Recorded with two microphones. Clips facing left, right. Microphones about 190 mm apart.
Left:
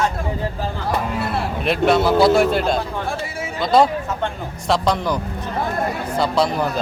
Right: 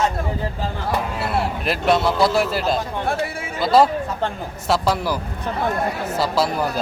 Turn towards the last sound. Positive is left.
turn(degrees=-5)  # may be behind; listen again after turning